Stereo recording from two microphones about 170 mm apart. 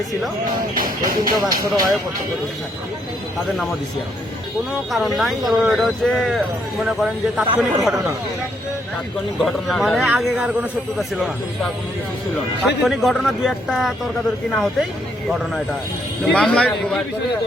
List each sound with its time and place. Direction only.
0.7 s speech: 55° right (ahead or behind)
1.4 s speech: 20° right (ahead or behind)
4.7 s a man's voice: centre (ahead or behind)
9.4 s a man's voice: centre (ahead or behind)
12.8 s a man's voice: centre (ahead or behind)
16.2 s a man's voice: 5° left (ahead or behind)